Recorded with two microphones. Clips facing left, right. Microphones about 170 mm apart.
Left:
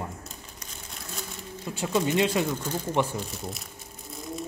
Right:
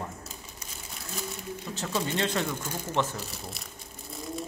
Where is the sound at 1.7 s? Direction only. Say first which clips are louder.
Left 6 dB; 10° left (ahead or behind).